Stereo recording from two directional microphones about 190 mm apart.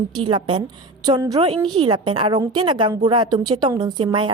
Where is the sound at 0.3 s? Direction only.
25° right (ahead or behind).